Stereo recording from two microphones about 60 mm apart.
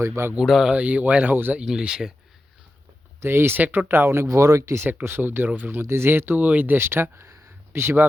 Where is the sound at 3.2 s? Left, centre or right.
Right.